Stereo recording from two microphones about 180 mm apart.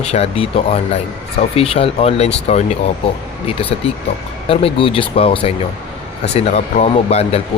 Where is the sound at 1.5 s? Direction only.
30° left (ahead or behind).